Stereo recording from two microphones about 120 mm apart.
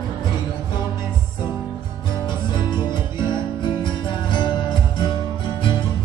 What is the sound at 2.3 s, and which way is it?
Music, 40° left (ahead or behind).